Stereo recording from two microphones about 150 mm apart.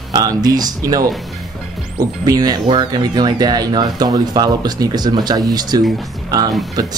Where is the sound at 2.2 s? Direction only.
25° right (ahead or behind).